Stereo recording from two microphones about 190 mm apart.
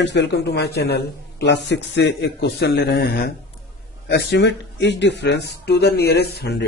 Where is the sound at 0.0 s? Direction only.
65° left (ahead or behind).